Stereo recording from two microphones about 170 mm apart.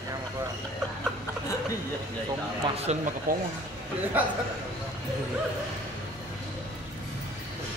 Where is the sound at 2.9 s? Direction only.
40° right (ahead or behind).